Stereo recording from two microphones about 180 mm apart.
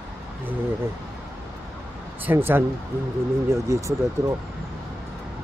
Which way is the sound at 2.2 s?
10° right (ahead or behind).